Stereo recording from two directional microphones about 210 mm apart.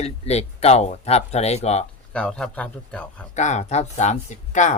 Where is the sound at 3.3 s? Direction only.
35° left (ahead or behind).